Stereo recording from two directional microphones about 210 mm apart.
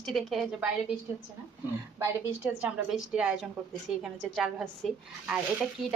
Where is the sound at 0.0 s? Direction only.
Centre (ahead or behind).